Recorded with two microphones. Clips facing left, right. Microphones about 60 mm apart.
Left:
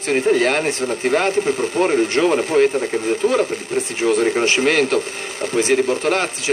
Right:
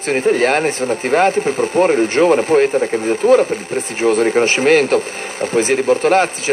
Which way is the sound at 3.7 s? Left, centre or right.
Right.